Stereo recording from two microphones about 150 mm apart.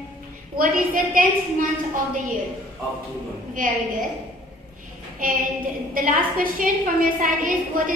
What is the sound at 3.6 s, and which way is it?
Speech, 65° right (ahead or behind).